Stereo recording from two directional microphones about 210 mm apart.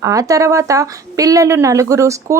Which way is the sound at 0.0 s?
15° right (ahead or behind).